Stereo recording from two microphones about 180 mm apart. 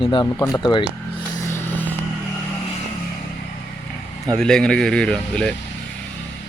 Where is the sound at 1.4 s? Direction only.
15° left (ahead or behind).